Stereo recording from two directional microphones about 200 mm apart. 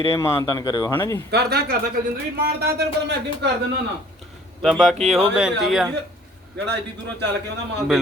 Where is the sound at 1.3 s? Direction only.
55° right (ahead or behind).